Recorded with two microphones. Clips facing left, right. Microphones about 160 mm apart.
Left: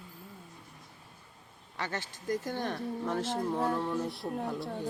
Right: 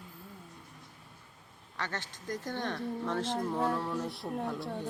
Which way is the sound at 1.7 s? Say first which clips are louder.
Left 2 dB; 10° left (ahead or behind).